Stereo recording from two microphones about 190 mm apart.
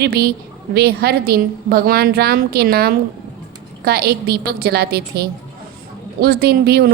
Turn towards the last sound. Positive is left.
turn(degrees=-60)  # may be behind; listen again after turning